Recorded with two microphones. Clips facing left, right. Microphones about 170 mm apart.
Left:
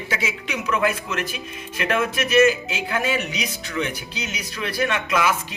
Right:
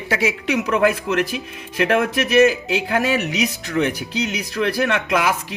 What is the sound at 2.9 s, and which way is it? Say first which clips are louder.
Speech: right 3 dB; 65° right (ahead or behind).